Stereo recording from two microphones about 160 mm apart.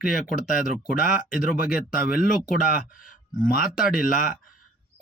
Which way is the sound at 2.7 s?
60° left (ahead or behind).